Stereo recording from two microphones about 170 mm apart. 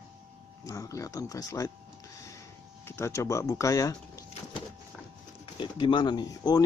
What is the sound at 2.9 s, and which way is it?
Speech, 15° left (ahead or behind).